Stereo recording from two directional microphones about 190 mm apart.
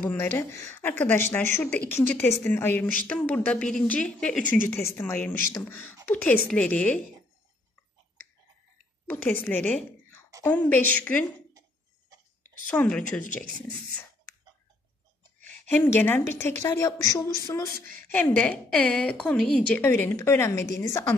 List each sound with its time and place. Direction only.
0.0 s a woman's voice: 10° left (ahead or behind)
9.1 s a woman's voice: 10° left (ahead or behind)
12.6 s a woman's voice: 5° left (ahead or behind)
15.7 s a woman's voice: 10° left (ahead or behind)
17.8 s a woman's voice: 45° right (ahead or behind)
18.1 s a woman's voice: 5° left (ahead or behind)